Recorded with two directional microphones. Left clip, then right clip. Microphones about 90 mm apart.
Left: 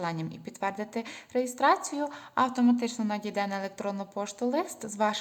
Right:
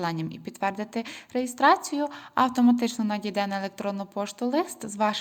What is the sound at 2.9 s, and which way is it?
A woman's voice, 30° right (ahead or behind).